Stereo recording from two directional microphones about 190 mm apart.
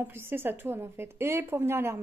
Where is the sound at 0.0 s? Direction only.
10° right (ahead or behind).